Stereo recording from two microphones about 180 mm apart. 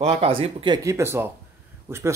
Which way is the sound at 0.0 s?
30° right (ahead or behind).